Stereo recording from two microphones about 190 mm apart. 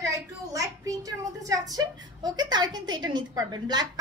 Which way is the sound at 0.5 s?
20° right (ahead or behind).